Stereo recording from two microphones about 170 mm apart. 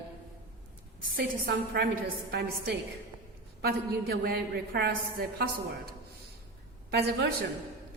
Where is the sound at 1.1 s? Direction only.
65° right (ahead or behind).